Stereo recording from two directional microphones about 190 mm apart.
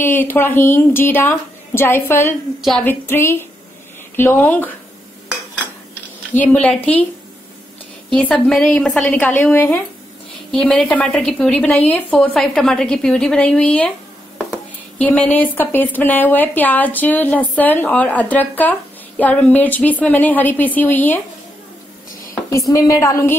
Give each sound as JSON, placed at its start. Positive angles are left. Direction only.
{"t": 0.0, "sound": "speech", "side_deg": 10}
{"t": 6.3, "sound": "speech", "side_deg": 10}
{"t": 8.1, "sound": "a woman's voice", "side_deg": 5}
{"t": 15.0, "sound": "speech", "side_deg": 10}
{"t": 22.3, "sound": "a woman's voice", "side_deg": 15}